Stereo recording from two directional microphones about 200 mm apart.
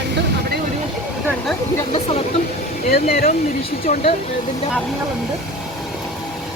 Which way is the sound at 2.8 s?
50° left (ahead or behind).